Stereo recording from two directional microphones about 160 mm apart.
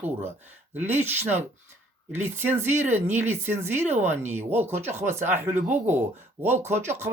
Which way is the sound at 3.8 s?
45° right (ahead or behind).